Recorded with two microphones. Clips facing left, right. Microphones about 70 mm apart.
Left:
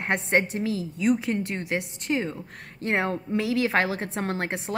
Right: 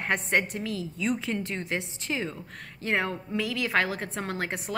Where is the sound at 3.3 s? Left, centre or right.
Left.